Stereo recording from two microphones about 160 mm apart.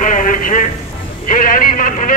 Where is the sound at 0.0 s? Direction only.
55° left (ahead or behind).